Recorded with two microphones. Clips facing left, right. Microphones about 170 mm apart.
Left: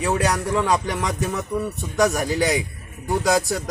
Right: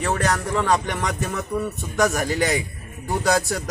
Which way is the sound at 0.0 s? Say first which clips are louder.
Left 1 dB; 5° left (ahead or behind).